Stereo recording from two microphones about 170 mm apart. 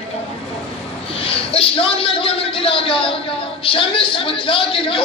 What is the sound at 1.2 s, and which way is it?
A man's voice, 35° left (ahead or behind).